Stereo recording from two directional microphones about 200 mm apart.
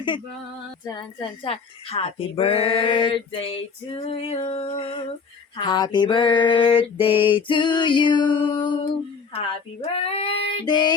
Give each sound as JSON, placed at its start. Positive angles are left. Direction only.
{"t": 1.5, "sound": "speech", "side_deg": 30}